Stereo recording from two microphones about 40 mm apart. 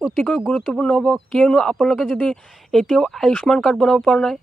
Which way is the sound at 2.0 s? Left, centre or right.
Centre.